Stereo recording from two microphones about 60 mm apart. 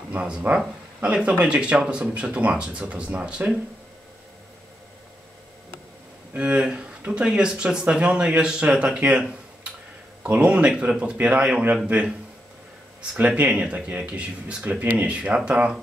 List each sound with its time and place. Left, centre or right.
0.1 s speech: right
6.3 s speech: centre
10.3 s speech: centre
13.1 s speech: right